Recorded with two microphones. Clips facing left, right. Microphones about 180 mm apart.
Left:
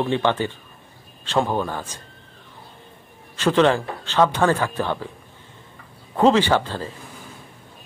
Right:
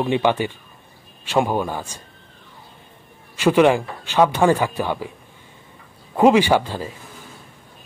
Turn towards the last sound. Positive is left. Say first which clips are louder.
# right 2 dB
turn(degrees=-15)  # may be behind; listen again after turning